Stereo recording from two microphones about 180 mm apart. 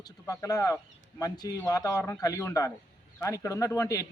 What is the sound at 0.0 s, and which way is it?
Speech, 20° left (ahead or behind).